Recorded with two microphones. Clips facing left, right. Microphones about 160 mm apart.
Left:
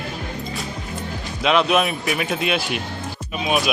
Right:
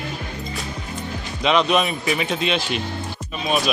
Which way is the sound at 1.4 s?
5° left (ahead or behind).